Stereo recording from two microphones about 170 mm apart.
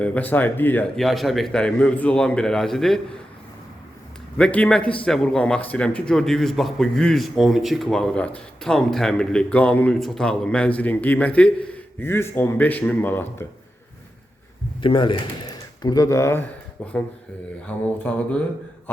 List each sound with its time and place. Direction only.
0.0 s speech: 10° left (ahead or behind)
4.4 s a man's voice: 5° left (ahead or behind)
14.8 s a man's voice: 30° left (ahead or behind); by 18.4 s 5° left (ahead or behind)